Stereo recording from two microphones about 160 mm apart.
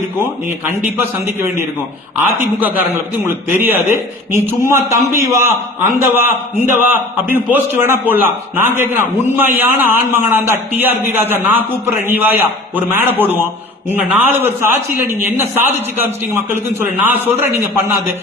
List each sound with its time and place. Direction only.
0.6 s a man's voice: 15° right (ahead or behind)
3.2 s a man's voice: 15° right (ahead or behind)